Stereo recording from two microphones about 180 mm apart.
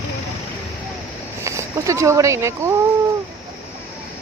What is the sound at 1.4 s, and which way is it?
Speech, 15° right (ahead or behind).